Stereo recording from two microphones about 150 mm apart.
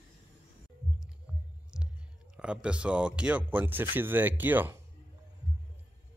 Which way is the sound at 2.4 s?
5° right (ahead or behind).